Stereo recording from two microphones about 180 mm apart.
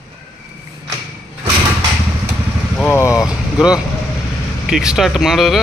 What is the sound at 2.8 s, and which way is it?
Vehicle, 15° left (ahead or behind).